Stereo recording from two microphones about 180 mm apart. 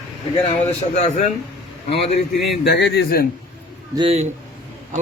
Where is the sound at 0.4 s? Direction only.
40° left (ahead or behind).